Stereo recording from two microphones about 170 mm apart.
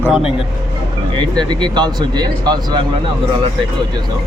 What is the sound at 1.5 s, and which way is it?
Speech, 25° right (ahead or behind).